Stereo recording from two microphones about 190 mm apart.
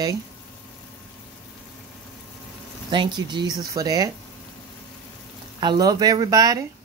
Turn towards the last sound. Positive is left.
turn(degrees=-20)  # may be behind; listen again after turning